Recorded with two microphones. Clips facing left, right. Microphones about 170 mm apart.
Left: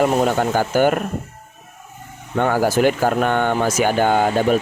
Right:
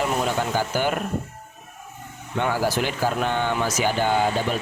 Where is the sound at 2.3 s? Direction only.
50° left (ahead or behind).